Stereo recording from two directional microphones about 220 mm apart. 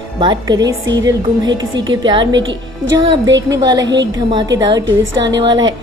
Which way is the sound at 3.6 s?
20° right (ahead or behind).